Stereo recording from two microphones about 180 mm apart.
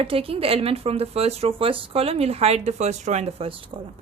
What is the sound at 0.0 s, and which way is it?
Speech, 30° right (ahead or behind).